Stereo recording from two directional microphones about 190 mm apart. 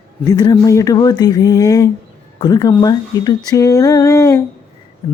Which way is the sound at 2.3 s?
20° left (ahead or behind).